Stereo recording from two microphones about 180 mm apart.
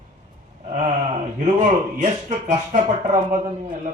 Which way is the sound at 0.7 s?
40° right (ahead or behind).